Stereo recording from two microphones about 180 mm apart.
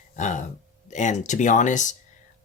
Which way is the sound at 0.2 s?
40° left (ahead or behind).